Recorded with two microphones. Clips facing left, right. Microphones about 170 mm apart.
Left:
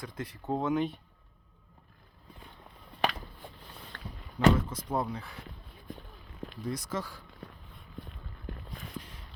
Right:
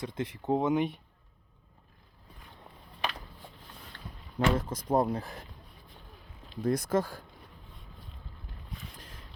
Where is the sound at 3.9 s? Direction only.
55° left (ahead or behind).